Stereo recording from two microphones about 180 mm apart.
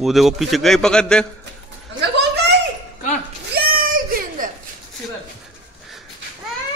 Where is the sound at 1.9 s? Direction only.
70° right (ahead or behind).